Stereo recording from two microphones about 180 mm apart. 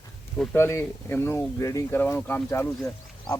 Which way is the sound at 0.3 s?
15° left (ahead or behind).